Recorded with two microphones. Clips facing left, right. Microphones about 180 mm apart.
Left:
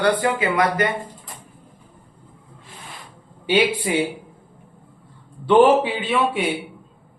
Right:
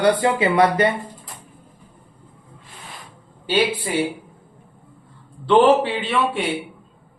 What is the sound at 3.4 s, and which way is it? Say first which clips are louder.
Speech: left 1 dB; 15° left (ahead or behind).